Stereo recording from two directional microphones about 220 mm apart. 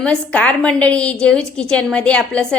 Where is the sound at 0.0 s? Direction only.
5° left (ahead or behind).